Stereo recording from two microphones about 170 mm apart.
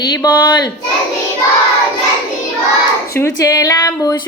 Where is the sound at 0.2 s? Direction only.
25° left (ahead or behind).